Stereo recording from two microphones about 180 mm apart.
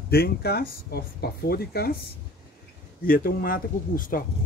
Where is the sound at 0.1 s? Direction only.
60° left (ahead or behind).